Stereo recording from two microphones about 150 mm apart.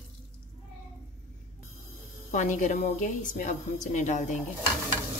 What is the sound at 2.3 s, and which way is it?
A woman's voice, 55° left (ahead or behind).